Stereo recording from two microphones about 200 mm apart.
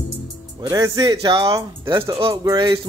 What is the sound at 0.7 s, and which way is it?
A man's voice, 15° right (ahead or behind).